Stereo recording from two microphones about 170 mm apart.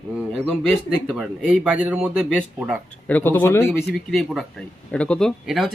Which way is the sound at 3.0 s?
10° left (ahead or behind).